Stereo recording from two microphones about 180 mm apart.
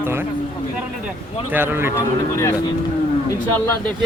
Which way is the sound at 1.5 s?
10° right (ahead or behind).